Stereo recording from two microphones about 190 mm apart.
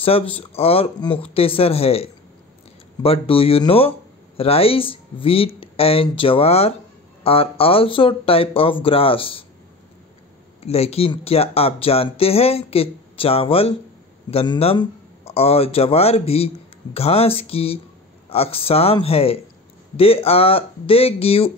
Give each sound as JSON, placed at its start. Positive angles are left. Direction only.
{"t": 0.0, "sound": "speech", "side_deg": 30}
{"t": 10.6, "sound": "speech", "side_deg": 35}